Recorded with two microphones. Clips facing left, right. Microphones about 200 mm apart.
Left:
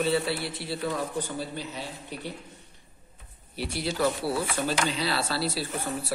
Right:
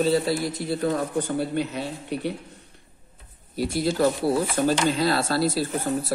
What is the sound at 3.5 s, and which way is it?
Speech, 40° right (ahead or behind).